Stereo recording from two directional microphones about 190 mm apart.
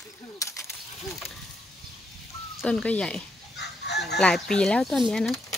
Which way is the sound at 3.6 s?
60° left (ahead or behind).